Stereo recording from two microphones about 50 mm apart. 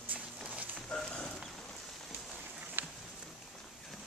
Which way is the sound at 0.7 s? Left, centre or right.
Centre.